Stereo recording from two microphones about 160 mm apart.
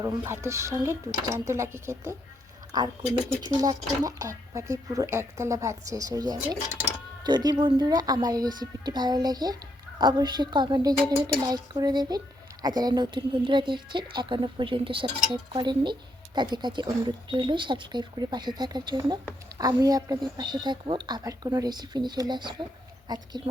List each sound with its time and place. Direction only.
0.0 s speech: 20° right (ahead or behind)